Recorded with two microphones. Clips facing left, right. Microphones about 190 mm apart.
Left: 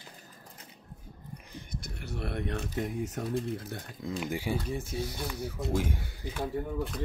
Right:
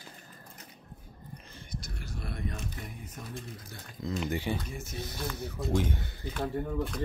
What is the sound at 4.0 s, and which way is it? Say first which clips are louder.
Speech: right 2 dB; 10° left (ahead or behind).